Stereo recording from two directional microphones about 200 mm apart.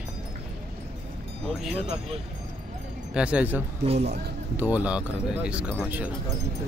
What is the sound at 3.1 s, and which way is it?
Speech, 5° right (ahead or behind).